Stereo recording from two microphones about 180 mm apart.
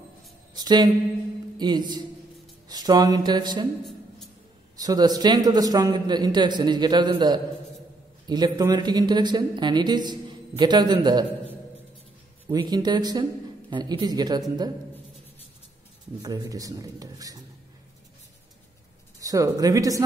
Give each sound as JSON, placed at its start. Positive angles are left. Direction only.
{"t": 0.6, "sound": "speech", "side_deg": -25}
{"t": 4.7, "sound": "speech", "side_deg": -20}
{"t": 12.4, "sound": "speech", "side_deg": -20}
{"t": 16.2, "sound": "speech", "side_deg": -20}
{"t": 19.1, "sound": "speech", "side_deg": -20}